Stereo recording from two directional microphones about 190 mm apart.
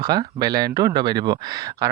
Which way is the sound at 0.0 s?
20° right (ahead or behind).